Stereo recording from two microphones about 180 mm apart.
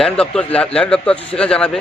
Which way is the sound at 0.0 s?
5° left (ahead or behind).